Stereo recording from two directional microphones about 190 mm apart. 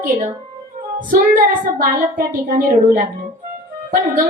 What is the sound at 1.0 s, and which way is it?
Music, 45° right (ahead or behind).